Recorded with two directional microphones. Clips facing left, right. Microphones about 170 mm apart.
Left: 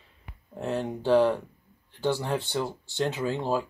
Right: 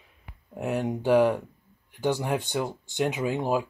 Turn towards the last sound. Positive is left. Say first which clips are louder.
# right 1 dB
turn(degrees=-15)  # may be behind; listen again after turning